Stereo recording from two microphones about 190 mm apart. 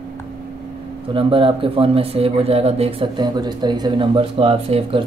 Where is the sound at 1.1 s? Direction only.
25° right (ahead or behind).